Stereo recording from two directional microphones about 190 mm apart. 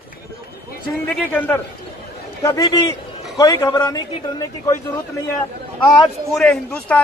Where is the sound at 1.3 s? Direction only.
10° left (ahead or behind).